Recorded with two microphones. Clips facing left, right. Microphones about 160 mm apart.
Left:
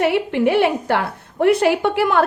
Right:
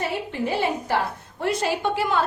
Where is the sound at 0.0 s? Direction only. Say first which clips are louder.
Left 10 dB; 70° left (ahead or behind).